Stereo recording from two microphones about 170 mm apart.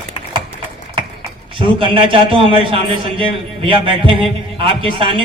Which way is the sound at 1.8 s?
30° right (ahead or behind).